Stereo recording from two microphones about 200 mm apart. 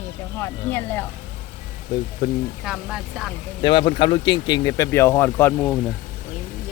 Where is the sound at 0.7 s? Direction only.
10° left (ahead or behind).